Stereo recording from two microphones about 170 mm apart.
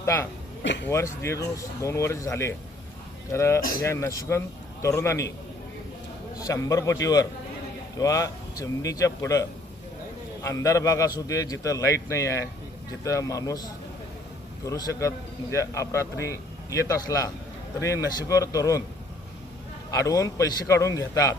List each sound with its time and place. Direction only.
0.0 s a man's voice: 15° left (ahead or behind)
0.6 s a man's voice: 90° left
0.9 s speech: 15° left (ahead or behind)
6.3 s a man's voice: 20° left (ahead or behind)
19.9 s a man's voice: 20° left (ahead or behind)